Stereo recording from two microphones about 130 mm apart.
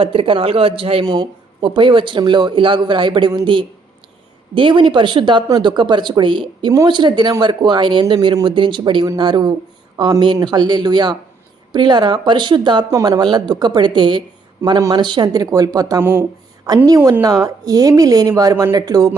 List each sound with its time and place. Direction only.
0.0 s a man's voice: 45° right (ahead or behind)
1.0 s a woman's voice: 35° right (ahead or behind)